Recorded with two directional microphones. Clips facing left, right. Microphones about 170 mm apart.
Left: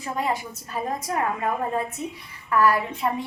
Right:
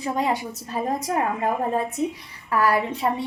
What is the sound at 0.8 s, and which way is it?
Speech, 25° right (ahead or behind).